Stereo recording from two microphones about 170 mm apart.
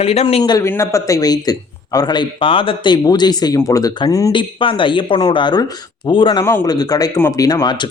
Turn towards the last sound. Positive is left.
turn(degrees=25)  # may be behind; listen again after turning